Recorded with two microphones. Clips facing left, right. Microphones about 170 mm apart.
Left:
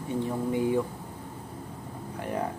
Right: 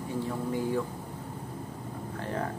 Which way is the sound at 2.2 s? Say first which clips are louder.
Left 3 dB; 15° left (ahead or behind).